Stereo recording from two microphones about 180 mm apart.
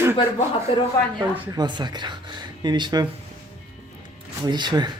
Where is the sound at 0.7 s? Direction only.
35° left (ahead or behind).